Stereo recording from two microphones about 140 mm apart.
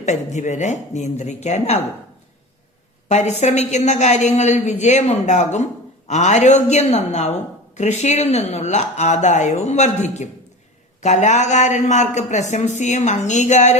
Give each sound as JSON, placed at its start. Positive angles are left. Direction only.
{"t": 0.0, "sound": "speech", "side_deg": 55}
{"t": 3.1, "sound": "speech", "side_deg": 55}